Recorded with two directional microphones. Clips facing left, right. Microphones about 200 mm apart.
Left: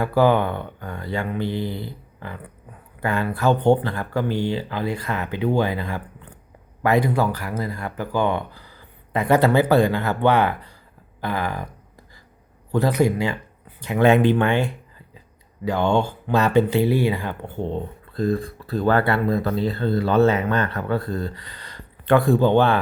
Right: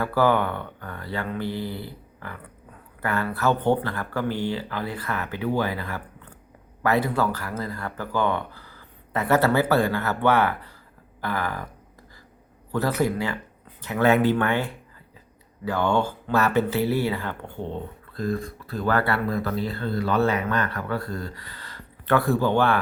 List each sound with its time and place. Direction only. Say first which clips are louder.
0.0 s speech: left 3 dB; 15° left (ahead or behind)
12.7 s speech: left 4 dB; 15° left (ahead or behind)
18.1 s speech: left 5 dB; 30° left (ahead or behind)